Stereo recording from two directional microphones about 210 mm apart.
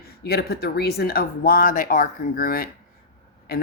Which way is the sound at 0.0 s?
45° left (ahead or behind).